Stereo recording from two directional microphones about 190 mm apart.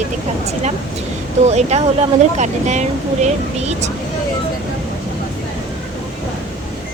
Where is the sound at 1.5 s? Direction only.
35° right (ahead or behind).